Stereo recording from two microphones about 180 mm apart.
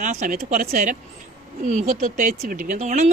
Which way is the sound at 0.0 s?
45° right (ahead or behind).